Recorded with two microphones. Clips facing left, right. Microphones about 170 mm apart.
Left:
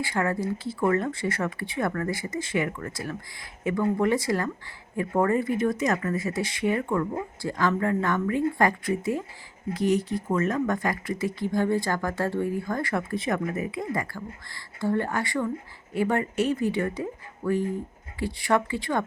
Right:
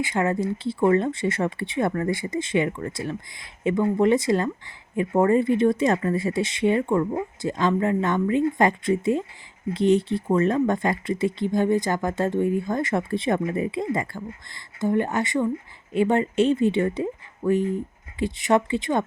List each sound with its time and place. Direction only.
0.0 s speech: 20° right (ahead or behind)